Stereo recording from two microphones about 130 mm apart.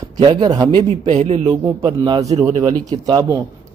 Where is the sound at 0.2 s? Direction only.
35° right (ahead or behind).